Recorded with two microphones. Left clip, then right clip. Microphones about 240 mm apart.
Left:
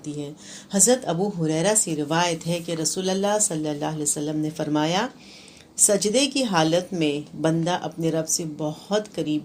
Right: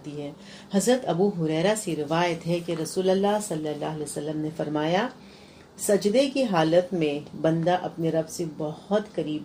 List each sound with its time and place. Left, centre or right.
0.7 s speech: left